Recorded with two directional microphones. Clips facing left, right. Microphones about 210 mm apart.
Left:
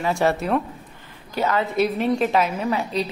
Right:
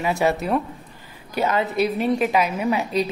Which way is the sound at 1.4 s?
20° right (ahead or behind).